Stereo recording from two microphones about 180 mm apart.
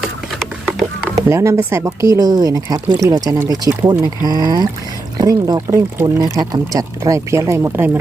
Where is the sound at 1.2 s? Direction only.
15° right (ahead or behind).